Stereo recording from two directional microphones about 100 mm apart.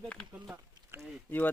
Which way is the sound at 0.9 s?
25° right (ahead or behind).